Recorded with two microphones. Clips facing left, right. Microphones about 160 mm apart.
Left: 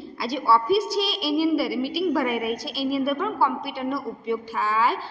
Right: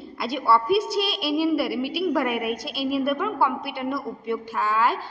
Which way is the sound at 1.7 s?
55° right (ahead or behind).